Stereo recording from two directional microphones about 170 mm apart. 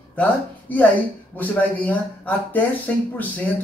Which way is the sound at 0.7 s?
10° left (ahead or behind).